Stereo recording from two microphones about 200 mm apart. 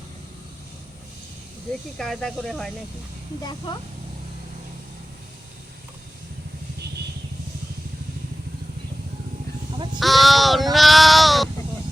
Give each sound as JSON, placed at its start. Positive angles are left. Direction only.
{"t": 2.0, "sound": "speech", "side_deg": 5}
{"t": 9.7, "sound": "sheep", "side_deg": -25}
{"t": 10.0, "sound": "crow", "side_deg": 0}